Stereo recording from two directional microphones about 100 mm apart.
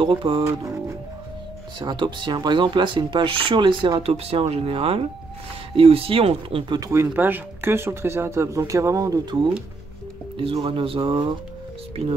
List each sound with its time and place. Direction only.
0.0 s speech: 60° right (ahead or behind)
1.8 s speech: 50° right (ahead or behind)
4.0 s speech: 80° right
6.8 s speech: 25° right (ahead or behind); by 9.5 s 50° right (ahead or behind)
10.3 s speech: 60° right (ahead or behind)